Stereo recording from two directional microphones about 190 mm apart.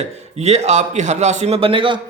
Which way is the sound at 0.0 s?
35° right (ahead or behind).